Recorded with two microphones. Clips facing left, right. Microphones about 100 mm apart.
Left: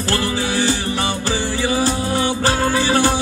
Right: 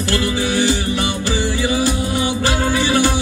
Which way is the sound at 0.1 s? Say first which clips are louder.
Right 1 dB; 35° left (ahead or behind).